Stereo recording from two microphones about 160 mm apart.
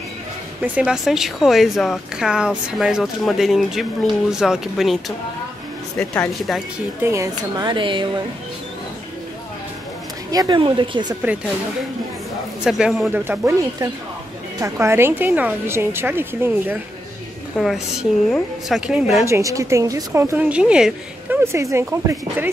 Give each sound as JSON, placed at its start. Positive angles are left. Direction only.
{"t": 0.6, "sound": "a woman's voice", "side_deg": -5}
{"t": 5.9, "sound": "a woman's voice", "side_deg": 5}
{"t": 7.0, "sound": "a woman's voice", "side_deg": -20}
{"t": 10.3, "sound": "a woman's voice", "side_deg": -25}
{"t": 12.6, "sound": "a woman's voice", "side_deg": -5}
{"t": 14.6, "sound": "a woman's voice", "side_deg": -15}
{"t": 17.6, "sound": "a woman's voice", "side_deg": 0}
{"t": 19.2, "sound": "a woman's voice", "side_deg": -20}
{"t": 21.5, "sound": "a woman's voice", "side_deg": -15}